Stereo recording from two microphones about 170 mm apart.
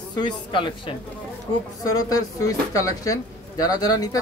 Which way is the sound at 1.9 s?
20° left (ahead or behind).